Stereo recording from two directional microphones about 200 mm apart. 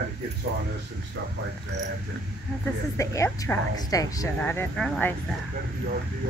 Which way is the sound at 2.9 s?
15° left (ahead or behind).